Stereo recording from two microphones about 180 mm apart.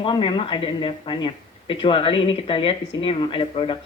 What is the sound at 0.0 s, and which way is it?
Speech, 25° left (ahead or behind).